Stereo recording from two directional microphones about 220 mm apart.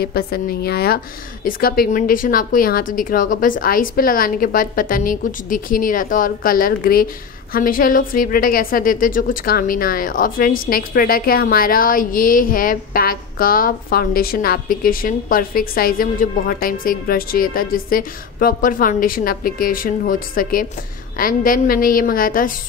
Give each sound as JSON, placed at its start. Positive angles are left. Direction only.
{"t": 0.0, "sound": "a woman's voice", "side_deg": 45}